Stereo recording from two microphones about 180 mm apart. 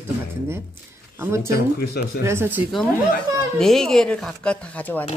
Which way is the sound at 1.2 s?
15° right (ahead or behind).